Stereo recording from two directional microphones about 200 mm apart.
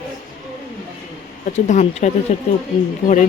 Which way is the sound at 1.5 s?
35° left (ahead or behind).